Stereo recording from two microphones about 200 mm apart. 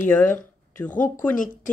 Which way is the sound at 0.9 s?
40° left (ahead or behind).